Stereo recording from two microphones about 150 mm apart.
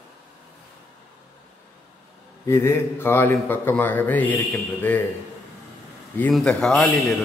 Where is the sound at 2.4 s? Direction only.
15° left (ahead or behind).